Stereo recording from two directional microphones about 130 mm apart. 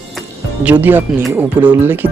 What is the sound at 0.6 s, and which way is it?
Speech, 15° right (ahead or behind).